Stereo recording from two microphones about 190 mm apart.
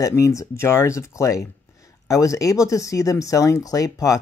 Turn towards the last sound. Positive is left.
turn(degrees=20)  # may be behind; listen again after turning